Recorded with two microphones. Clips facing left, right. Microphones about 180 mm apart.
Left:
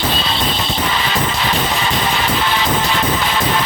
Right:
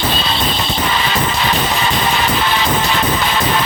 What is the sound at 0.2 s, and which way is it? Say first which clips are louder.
Music: right 1 dB; 65° right (ahead or behind).